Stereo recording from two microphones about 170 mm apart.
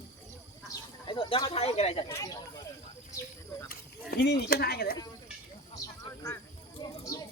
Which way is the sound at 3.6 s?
70° left (ahead or behind).